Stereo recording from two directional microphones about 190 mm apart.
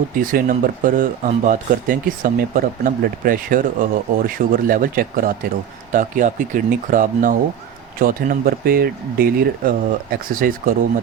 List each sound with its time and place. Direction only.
0.2 s speech: 45° right (ahead or behind)